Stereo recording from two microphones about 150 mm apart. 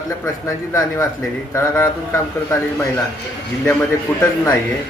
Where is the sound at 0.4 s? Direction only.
20° left (ahead or behind).